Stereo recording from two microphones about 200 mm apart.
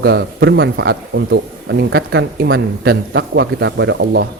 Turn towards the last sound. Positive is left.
turn(degrees=-60)  # may be behind; listen again after turning